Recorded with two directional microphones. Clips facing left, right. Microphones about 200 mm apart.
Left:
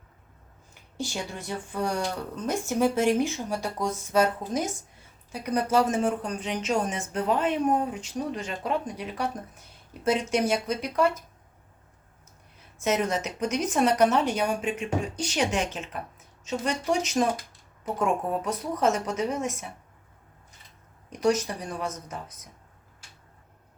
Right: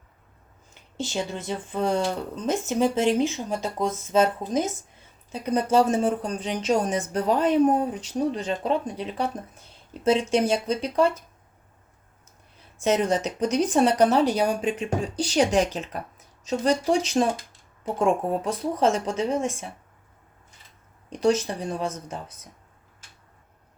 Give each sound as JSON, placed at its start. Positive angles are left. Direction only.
{"t": 0.7, "sound": "speech", "side_deg": -20}
{"t": 12.8, "sound": "speech", "side_deg": -30}
{"t": 21.1, "sound": "speech", "side_deg": -30}